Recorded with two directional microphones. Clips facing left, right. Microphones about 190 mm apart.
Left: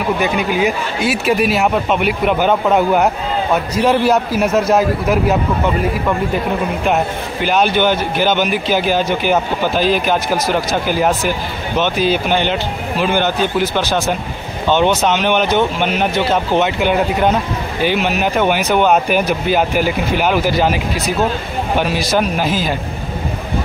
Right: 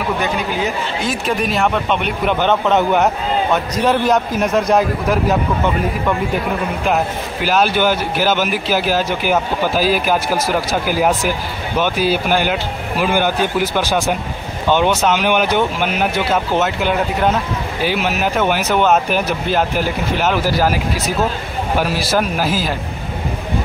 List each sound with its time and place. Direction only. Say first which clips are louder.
0.2 s a man's voice: left 4 dB; 10° left (ahead or behind)
21.7 s a man's voice: left 1 dB; 5° right (ahead or behind)